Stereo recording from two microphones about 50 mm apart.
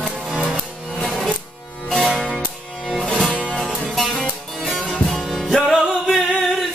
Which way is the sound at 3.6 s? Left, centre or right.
Centre.